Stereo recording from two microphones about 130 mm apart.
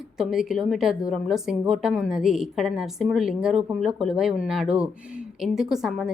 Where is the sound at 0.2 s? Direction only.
5° right (ahead or behind).